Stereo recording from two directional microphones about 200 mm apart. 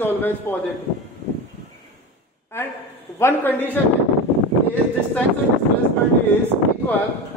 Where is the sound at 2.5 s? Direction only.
10° left (ahead or behind).